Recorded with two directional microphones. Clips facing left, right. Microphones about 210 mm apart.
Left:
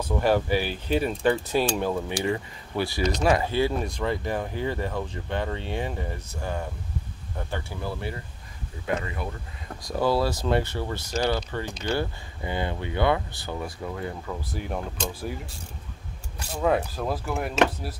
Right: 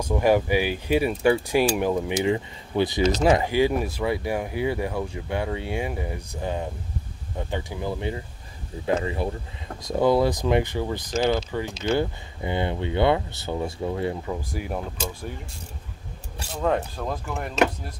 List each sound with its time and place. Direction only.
0.0 s speech: 10° right (ahead or behind)
8.8 s speech: 30° right (ahead or behind)
11.3 s speech: 5° right (ahead or behind)
11.8 s speech: 20° right (ahead or behind)
16.5 s speech: 5° left (ahead or behind)